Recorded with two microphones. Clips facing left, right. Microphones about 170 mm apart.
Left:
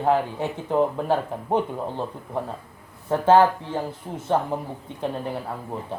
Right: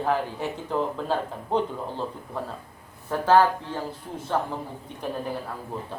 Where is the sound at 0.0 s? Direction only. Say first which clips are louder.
Left 4 dB; 20° left (ahead or behind).